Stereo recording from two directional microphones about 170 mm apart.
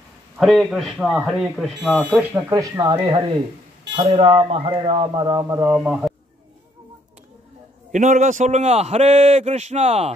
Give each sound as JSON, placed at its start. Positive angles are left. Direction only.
{"t": 0.4, "sound": "speech", "side_deg": 0}
{"t": 2.5, "sound": "speech", "side_deg": -20}
{"t": 7.9, "sound": "a man's voice", "side_deg": -45}